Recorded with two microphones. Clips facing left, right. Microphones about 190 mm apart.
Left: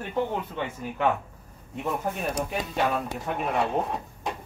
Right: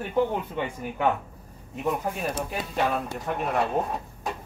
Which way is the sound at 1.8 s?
5° right (ahead or behind).